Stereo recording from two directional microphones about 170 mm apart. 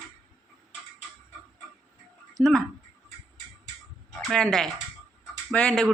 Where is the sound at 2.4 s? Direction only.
5° left (ahead or behind).